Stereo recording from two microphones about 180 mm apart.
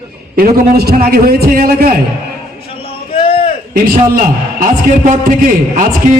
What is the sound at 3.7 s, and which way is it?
A man's voice, 50° right (ahead or behind).